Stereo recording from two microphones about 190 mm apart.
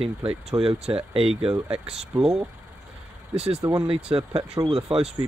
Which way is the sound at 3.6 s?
20° right (ahead or behind).